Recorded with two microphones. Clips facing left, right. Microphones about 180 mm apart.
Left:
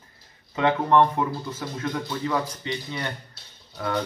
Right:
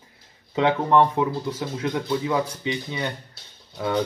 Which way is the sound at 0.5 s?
15° right (ahead or behind).